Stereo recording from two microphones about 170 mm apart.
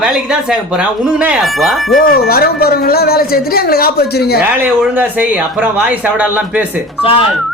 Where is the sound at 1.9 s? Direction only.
55° left (ahead or behind).